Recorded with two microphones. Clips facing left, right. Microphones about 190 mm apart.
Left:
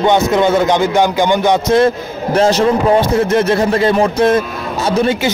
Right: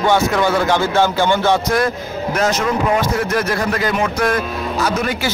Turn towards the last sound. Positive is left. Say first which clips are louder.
# left 5 dB
turn(degrees=25)  # may be behind; listen again after turning